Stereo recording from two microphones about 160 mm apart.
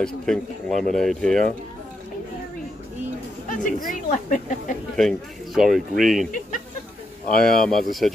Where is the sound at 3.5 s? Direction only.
55° left (ahead or behind).